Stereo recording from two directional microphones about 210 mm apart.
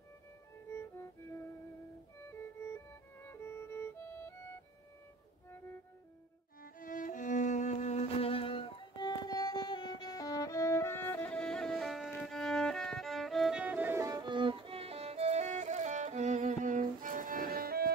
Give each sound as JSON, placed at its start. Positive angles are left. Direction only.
{"t": 2.7, "sound": "music", "side_deg": 10}
{"t": 6.6, "sound": "music", "side_deg": 40}